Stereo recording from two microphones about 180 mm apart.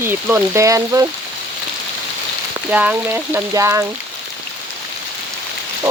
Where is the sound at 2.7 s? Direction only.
10° right (ahead or behind).